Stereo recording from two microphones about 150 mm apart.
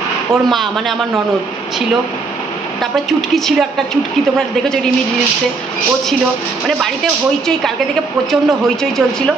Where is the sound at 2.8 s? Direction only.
Centre (ahead or behind).